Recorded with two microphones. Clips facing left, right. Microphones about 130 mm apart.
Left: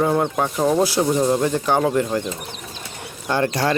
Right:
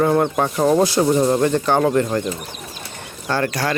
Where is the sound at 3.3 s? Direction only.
25° left (ahead or behind).